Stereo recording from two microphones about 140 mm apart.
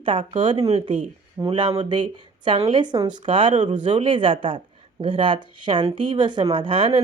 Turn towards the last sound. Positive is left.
turn(degrees=-40)  # may be behind; listen again after turning